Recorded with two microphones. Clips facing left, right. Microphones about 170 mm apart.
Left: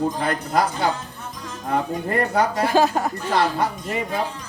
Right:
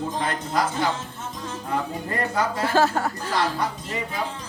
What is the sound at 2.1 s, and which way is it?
Speech, 60° left (ahead or behind).